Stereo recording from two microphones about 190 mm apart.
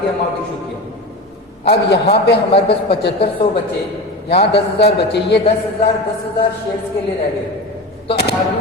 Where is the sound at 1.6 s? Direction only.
60° left (ahead or behind).